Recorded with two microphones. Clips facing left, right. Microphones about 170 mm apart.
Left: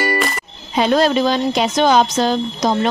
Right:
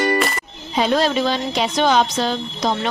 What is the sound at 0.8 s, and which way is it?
Speech, 50° left (ahead or behind).